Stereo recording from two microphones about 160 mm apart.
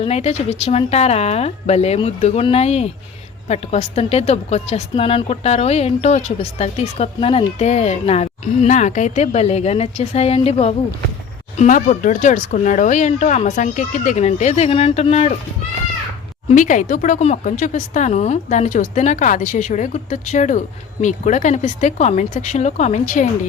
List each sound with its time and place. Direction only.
0.0 s speech: 40° left (ahead or behind)
16.5 s speech: 55° left (ahead or behind)